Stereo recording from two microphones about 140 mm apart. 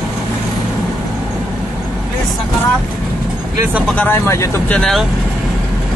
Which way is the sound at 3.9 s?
15° left (ahead or behind).